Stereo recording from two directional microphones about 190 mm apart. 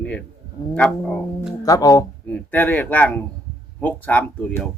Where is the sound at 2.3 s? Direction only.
10° left (ahead or behind).